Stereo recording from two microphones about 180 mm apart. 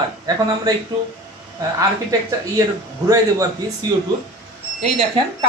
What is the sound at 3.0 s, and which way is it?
Speech, 20° right (ahead or behind).